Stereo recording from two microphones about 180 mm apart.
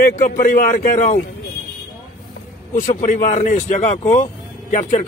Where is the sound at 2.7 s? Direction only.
45° left (ahead or behind).